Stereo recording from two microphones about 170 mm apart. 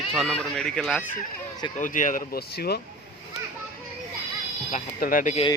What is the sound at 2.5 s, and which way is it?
Speech, 70° left (ahead or behind).